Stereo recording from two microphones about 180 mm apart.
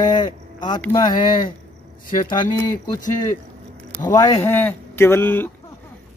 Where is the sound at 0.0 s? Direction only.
25° left (ahead or behind).